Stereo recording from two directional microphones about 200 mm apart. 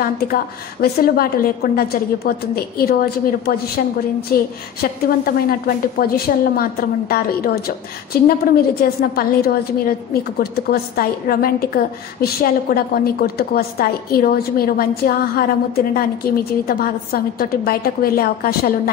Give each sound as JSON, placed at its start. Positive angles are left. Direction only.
{"t": 0.2, "sound": "a woman's voice", "side_deg": 50}